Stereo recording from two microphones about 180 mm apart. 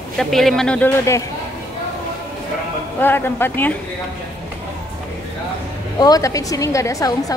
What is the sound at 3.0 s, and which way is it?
Speech, 10° left (ahead or behind).